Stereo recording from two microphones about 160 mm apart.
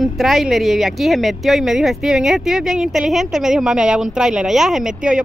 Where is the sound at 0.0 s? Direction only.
Centre (ahead or behind).